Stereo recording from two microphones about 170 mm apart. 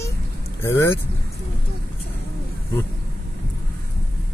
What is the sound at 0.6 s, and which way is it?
Speech, 15° left (ahead or behind).